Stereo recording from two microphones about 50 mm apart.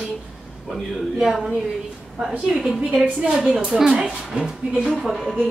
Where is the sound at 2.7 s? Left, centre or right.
Right.